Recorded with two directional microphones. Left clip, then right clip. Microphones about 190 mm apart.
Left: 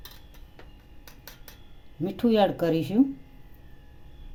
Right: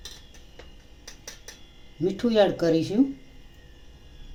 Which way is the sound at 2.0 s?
45° left (ahead or behind).